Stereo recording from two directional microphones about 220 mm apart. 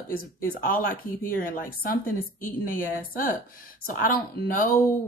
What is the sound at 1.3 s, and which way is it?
Speech, 40° left (ahead or behind).